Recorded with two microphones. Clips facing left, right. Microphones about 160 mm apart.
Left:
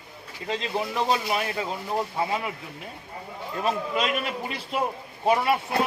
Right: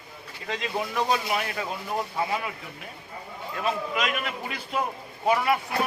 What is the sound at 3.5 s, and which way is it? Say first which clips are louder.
A man's voice: left 2 dB; 35° left (ahead or behind).